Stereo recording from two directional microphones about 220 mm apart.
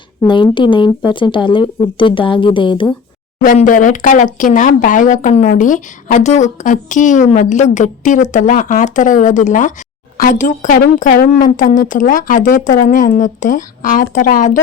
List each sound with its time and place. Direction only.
0.2 s speech: 20° left (ahead or behind)
3.4 s speech: 35° left (ahead or behind)